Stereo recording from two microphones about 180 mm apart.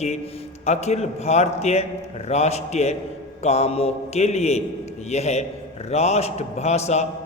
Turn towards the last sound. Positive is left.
turn(degrees=40)  # may be behind; listen again after turning